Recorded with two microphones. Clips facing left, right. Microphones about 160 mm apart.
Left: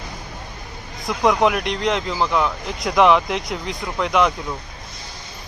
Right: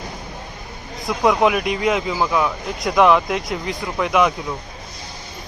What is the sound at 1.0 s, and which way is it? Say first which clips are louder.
Speech: right 1 dB; centre (ahead or behind).